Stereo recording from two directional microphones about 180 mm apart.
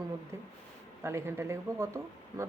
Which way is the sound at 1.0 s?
15° right (ahead or behind).